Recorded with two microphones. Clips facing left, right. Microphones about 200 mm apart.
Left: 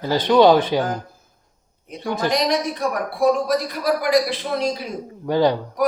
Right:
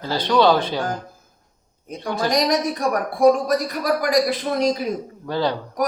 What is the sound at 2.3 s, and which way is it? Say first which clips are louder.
Speech: right 3 dB; 45° right (ahead or behind).